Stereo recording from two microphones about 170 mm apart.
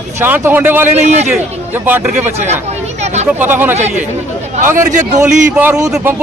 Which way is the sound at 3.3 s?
10° right (ahead or behind).